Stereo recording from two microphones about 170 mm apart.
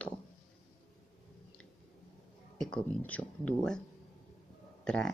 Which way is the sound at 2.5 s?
5° left (ahead or behind).